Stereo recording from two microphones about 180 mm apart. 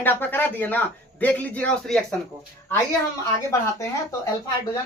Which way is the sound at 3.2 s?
15° left (ahead or behind).